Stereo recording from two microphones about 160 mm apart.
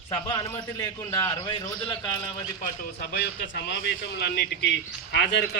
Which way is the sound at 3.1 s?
90° left.